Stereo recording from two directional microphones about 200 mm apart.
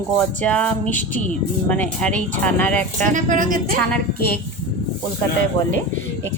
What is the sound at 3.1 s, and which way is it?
Speech, 40° right (ahead or behind).